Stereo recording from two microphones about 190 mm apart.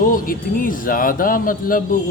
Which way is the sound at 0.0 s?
45° left (ahead or behind).